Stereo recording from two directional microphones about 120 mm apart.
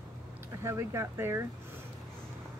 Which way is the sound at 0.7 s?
20° right (ahead or behind).